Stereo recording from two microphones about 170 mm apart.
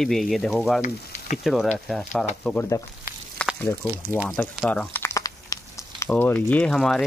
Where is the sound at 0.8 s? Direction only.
45° left (ahead or behind).